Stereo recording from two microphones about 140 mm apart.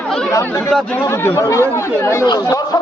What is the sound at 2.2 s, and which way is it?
Speech, 30° left (ahead or behind).